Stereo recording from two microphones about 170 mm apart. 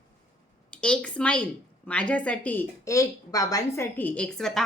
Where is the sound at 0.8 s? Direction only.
5° left (ahead or behind).